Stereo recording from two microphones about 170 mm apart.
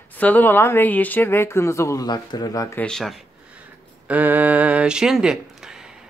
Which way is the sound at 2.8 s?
5° left (ahead or behind).